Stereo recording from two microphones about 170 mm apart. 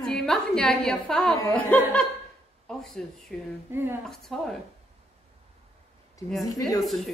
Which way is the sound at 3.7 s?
15° right (ahead or behind).